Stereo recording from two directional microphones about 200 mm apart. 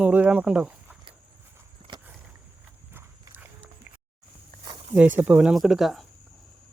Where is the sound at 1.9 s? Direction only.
25° right (ahead or behind).